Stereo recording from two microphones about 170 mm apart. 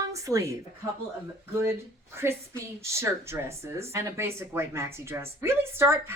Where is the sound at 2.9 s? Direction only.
15° right (ahead or behind).